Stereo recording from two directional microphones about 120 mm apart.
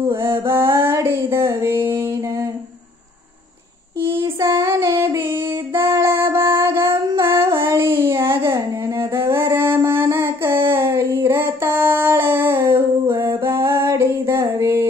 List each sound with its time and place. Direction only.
0.0 s a sound: 20° right (ahead or behind)
4.6 s singing: 25° right (ahead or behind)
9.8 s child singing: 25° right (ahead or behind)